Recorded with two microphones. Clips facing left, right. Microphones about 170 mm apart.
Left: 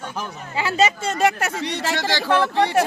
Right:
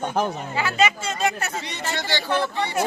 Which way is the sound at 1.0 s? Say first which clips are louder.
Left 5 dB; 85° left.